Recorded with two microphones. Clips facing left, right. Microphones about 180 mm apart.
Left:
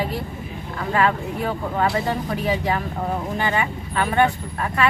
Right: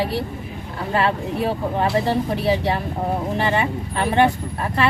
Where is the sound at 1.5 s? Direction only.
25° right (ahead or behind).